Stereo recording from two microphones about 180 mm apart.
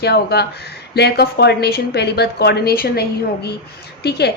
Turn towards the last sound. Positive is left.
turn(degrees=65)  # may be behind; listen again after turning